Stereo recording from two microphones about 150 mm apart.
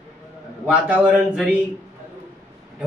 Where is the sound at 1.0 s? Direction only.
10° right (ahead or behind).